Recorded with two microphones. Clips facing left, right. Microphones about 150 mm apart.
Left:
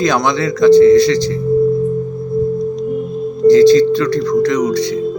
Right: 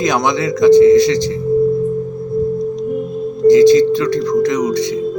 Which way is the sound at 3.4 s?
15° right (ahead or behind).